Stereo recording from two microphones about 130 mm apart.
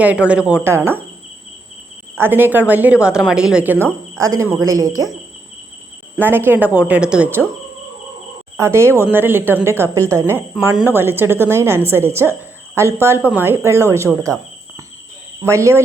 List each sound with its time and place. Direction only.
0.0 s speech: 10° right (ahead or behind)
2.1 s a woman's voice: 15° right (ahead or behind)
6.1 s speech: 15° right (ahead or behind)
8.5 s a woman's voice: 20° right (ahead or behind)
15.4 s a woman's voice: 20° right (ahead or behind)